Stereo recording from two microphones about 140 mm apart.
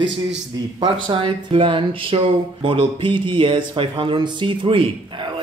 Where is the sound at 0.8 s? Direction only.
35° right (ahead or behind).